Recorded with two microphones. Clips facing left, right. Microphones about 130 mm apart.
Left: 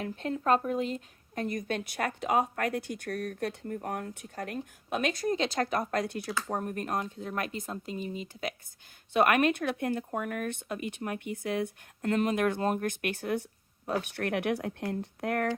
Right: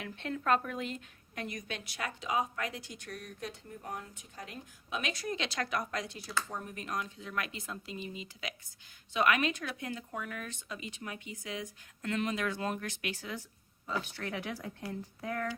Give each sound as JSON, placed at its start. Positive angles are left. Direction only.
{"t": 0.0, "sound": "a woman's voice", "side_deg": 35}